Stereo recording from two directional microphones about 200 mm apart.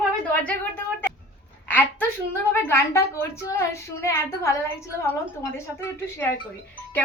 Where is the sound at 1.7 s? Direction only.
10° left (ahead or behind).